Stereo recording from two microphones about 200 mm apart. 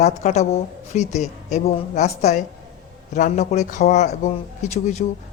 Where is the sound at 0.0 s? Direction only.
35° left (ahead or behind).